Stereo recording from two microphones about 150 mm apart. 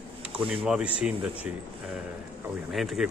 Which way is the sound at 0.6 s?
5° right (ahead or behind).